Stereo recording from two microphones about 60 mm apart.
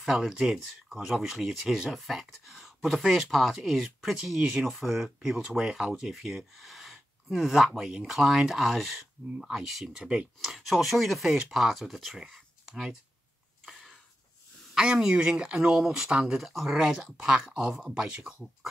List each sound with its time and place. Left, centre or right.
0.0 s speech: centre
10.0 s speech: centre
10.5 s speech: centre
13.7 s a sound: centre
14.7 s speech: centre